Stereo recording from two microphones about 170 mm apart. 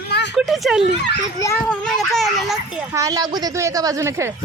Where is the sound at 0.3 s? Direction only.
Centre (ahead or behind).